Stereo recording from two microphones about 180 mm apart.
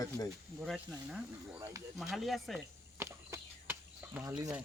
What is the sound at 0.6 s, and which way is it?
Speech, centre (ahead or behind).